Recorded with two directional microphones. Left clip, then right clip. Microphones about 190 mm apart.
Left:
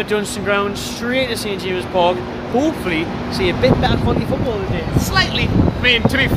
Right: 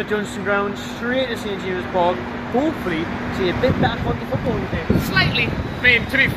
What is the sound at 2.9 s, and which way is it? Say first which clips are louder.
Speech: left 3 dB; 5° right (ahead or behind).